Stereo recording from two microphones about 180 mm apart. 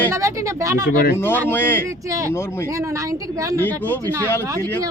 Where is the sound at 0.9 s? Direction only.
60° left (ahead or behind).